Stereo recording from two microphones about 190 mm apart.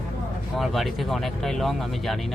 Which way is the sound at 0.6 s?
Centre (ahead or behind).